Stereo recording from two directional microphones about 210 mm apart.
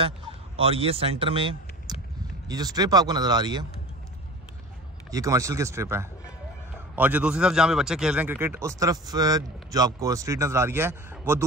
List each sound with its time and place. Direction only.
0.6 s speech: 25° right (ahead or behind)
5.1 s speech: 15° right (ahead or behind)